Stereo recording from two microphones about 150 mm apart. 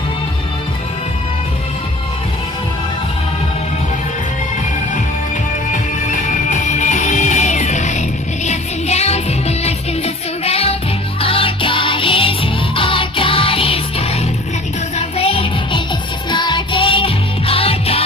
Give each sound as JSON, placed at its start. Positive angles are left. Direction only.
{"t": 5.7, "sound": "music", "side_deg": 55}